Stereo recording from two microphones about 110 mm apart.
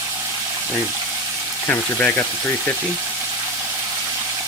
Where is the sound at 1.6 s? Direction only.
15° left (ahead or behind).